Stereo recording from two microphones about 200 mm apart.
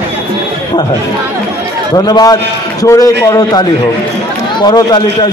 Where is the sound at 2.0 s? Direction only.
20° left (ahead or behind).